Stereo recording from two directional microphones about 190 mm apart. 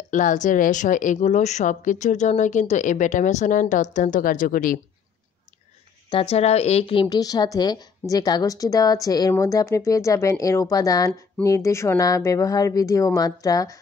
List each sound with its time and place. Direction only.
0.1 s a woman's voice: 40° left (ahead or behind)
6.0 s a woman's voice: 30° left (ahead or behind)